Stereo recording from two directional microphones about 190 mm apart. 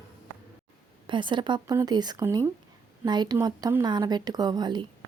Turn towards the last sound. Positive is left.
turn(degrees=-20)  # may be behind; listen again after turning